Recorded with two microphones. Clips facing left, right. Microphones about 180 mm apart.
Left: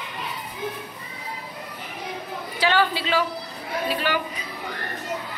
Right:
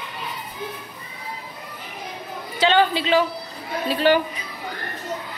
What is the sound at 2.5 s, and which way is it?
A woman's voice, 20° right (ahead or behind).